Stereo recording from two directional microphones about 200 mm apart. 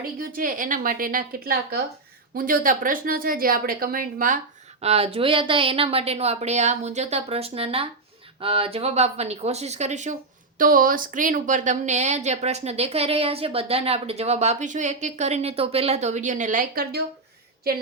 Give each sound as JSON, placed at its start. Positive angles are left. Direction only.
{"t": 0.2, "sound": "speech", "side_deg": -45}
{"t": 4.8, "sound": "speech", "side_deg": -30}